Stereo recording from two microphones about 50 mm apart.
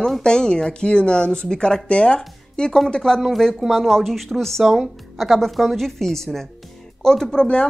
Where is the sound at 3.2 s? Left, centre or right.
Centre.